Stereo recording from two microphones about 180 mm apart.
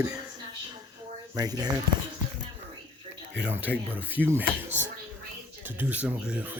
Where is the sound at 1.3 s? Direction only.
20° right (ahead or behind).